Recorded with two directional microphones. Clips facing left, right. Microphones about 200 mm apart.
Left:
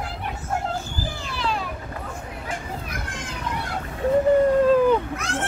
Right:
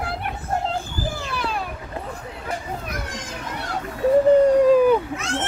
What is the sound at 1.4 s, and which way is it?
Vehicle, 55° right (ahead or behind).